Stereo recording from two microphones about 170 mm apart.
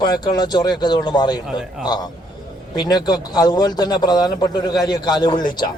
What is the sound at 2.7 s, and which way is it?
A man's voice, 25° left (ahead or behind).